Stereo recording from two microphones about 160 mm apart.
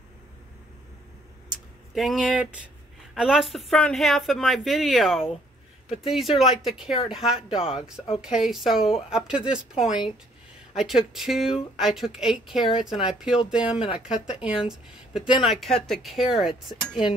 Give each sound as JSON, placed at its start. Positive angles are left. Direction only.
{"t": 2.0, "sound": "speech", "side_deg": 0}
{"t": 15.2, "sound": "speech", "side_deg": 30}
{"t": 15.5, "sound": "speech", "side_deg": 0}